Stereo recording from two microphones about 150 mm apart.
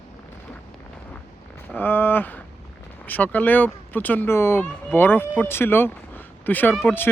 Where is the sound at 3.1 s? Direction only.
10° left (ahead or behind).